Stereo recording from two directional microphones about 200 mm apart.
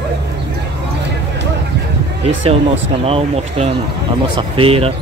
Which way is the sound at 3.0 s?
30° right (ahead or behind).